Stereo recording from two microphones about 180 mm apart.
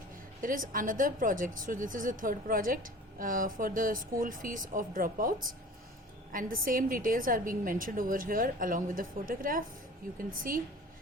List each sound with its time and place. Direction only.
0.4 s a woman's voice: 50° right (ahead or behind)
6.3 s a woman's voice: 50° right (ahead or behind)